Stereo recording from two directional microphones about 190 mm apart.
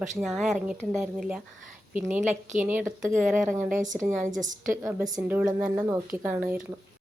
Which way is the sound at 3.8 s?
40° right (ahead or behind).